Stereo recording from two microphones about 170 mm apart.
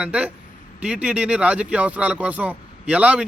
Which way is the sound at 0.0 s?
5° right (ahead or behind).